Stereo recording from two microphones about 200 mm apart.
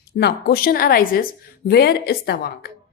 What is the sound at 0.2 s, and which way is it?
A woman's voice, 55° left (ahead or behind).